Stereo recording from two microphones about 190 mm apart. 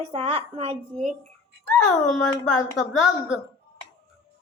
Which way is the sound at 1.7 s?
5° left (ahead or behind).